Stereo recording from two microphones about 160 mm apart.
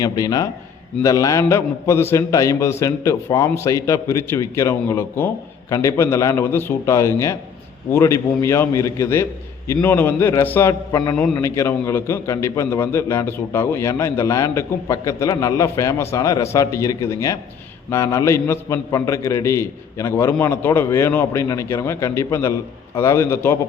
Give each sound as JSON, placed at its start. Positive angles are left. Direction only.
{"t": 0.0, "sound": "a man's voice", "side_deg": 25}
{"t": 11.1, "sound": "a man's voice", "side_deg": 5}
{"t": 11.3, "sound": "a man's voice", "side_deg": 20}